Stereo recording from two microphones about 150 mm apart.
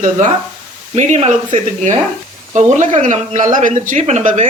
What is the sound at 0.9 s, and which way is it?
Speech, 50° right (ahead or behind).